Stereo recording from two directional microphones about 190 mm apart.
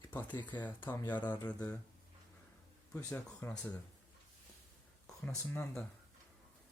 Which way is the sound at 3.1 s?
10° left (ahead or behind).